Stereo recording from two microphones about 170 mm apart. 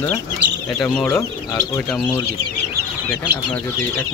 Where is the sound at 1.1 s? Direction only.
15° left (ahead or behind).